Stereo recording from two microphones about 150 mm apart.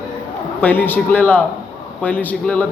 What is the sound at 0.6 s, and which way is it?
Speech, 10° left (ahead or behind).